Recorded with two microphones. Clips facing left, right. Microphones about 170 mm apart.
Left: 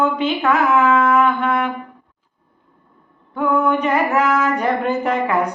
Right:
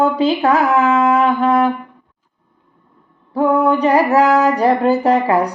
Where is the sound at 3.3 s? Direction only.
35° right (ahead or behind).